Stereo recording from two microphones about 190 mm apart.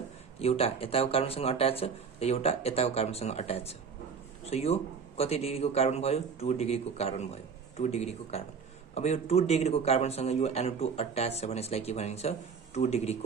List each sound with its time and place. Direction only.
0.4 s speech: 30° left (ahead or behind)